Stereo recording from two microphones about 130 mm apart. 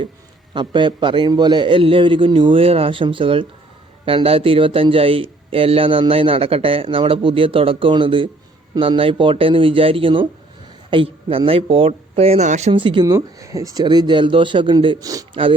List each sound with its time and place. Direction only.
0.5 s a man's voice: 35° right (ahead or behind); by 12.7 s 60° right (ahead or behind)
12.7 s a man's voice: 40° right (ahead or behind)
15.0 s speech: 25° right (ahead or behind)